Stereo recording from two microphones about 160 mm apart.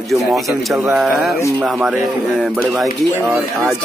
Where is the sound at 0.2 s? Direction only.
Centre (ahead or behind).